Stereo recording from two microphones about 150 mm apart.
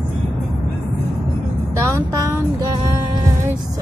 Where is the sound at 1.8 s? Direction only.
20° right (ahead or behind).